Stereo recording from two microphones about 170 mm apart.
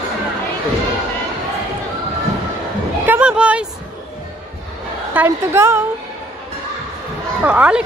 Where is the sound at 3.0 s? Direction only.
10° right (ahead or behind).